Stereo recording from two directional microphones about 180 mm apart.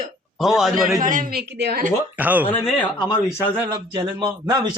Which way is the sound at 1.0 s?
45° right (ahead or behind).